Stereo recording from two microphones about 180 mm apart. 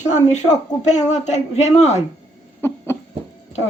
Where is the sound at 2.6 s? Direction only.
15° left (ahead or behind).